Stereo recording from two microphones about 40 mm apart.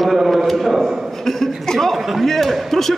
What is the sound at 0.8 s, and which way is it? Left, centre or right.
Speech, centre.